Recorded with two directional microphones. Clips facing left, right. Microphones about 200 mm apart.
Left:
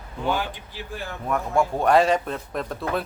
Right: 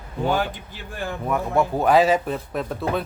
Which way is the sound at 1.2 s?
5° right (ahead or behind).